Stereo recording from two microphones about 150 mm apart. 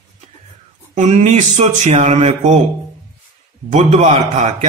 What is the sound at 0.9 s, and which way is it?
Speech, 50° right (ahead or behind).